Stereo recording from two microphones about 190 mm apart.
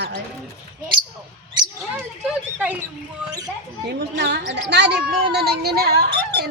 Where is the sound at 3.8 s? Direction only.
60° right (ahead or behind).